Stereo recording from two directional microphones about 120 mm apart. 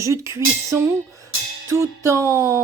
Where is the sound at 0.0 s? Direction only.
25° right (ahead or behind).